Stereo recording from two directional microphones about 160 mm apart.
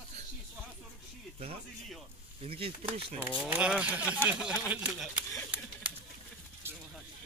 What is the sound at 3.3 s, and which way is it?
Speech, 5° right (ahead or behind).